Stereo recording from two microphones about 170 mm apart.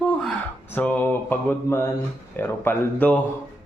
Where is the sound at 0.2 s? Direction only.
5° left (ahead or behind).